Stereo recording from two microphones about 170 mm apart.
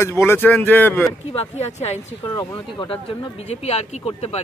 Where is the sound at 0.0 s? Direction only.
15° left (ahead or behind).